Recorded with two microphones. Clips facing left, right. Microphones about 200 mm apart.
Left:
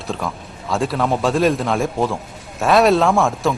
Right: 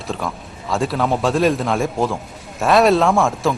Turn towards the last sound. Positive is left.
turn(degrees=0)  # may be behind; listen again after turning